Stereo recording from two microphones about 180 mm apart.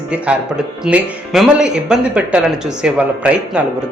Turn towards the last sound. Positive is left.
turn(degrees=-5)  # may be behind; listen again after turning